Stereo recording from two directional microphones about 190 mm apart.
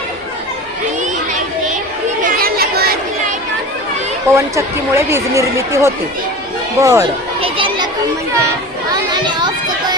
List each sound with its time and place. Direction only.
2.2 s chatter: 50° right (ahead or behind)
4.4 s speech: 15° right (ahead or behind)
7.4 s children playing: 25° right (ahead or behind)